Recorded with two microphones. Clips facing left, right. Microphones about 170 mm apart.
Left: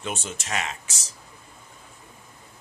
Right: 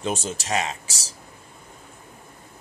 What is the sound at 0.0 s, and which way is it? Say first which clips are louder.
Speech: right 5 dB; 35° right (ahead or behind).